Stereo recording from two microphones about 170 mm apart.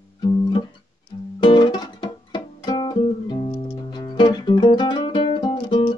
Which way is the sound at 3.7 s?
25° left (ahead or behind).